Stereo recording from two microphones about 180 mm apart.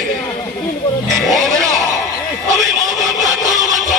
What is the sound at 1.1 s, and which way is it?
Music, centre (ahead or behind).